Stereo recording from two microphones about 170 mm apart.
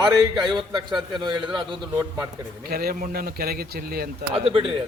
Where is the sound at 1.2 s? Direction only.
25° right (ahead or behind).